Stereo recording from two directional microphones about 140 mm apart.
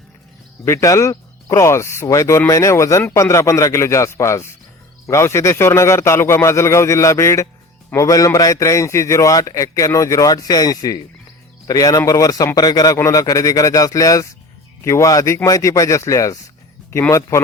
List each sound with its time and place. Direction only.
0.6 s a man's voice: 20° left (ahead or behind)